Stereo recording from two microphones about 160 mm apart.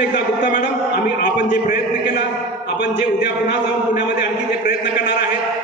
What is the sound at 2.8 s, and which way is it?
A man's voice, 90° left.